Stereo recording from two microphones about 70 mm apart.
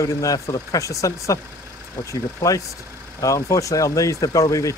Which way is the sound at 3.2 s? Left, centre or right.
Left.